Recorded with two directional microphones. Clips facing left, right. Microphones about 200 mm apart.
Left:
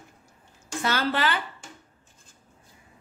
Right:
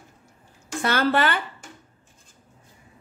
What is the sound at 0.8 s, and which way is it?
Speech, 55° right (ahead or behind).